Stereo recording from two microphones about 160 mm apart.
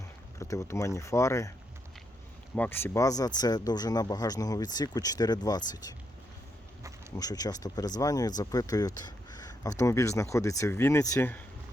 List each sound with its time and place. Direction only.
0.3 s speech: 20° left (ahead or behind)
2.6 s speech: 15° left (ahead or behind)
7.2 s speech: 25° left (ahead or behind)